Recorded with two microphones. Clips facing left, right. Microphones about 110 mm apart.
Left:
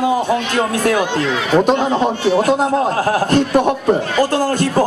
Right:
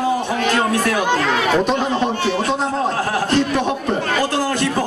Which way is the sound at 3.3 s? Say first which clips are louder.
Left 3 dB; 45° left (ahead or behind).